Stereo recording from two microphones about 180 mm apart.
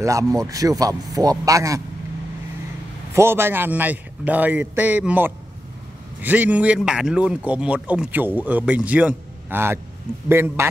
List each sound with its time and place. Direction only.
0.0 s a man's voice: 20° right (ahead or behind)
3.1 s a man's voice: 15° right (ahead or behind)